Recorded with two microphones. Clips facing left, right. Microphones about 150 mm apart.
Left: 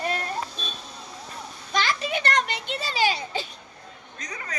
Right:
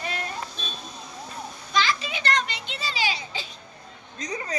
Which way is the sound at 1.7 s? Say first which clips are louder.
Even; 55° left (ahead or behind).